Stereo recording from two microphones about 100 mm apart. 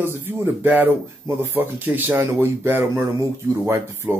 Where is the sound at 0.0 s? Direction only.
20° right (ahead or behind).